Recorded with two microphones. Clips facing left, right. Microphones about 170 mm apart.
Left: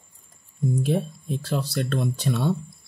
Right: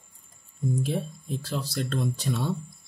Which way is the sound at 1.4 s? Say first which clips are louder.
Left 5 dB; 65° left (ahead or behind).